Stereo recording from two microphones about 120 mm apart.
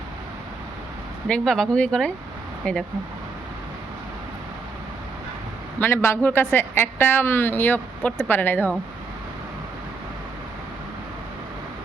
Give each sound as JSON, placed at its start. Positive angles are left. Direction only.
{"t": 1.3, "sound": "a woman's voice", "side_deg": 5}
{"t": 5.8, "sound": "a woman's voice", "side_deg": 20}